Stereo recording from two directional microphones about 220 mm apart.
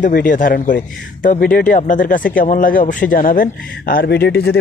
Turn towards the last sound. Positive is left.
turn(degrees=45)  # may be behind; listen again after turning